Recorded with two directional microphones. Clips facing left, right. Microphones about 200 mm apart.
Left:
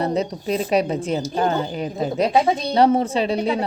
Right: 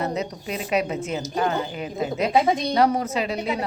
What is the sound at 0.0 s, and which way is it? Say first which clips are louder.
A woman's voice: left 5 dB; 30° left (ahead or behind).